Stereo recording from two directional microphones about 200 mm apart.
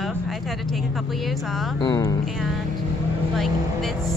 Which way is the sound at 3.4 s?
Centre (ahead or behind).